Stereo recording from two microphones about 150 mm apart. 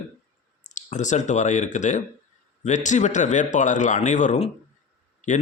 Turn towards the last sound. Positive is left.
turn(degrees=55)  # may be behind; listen again after turning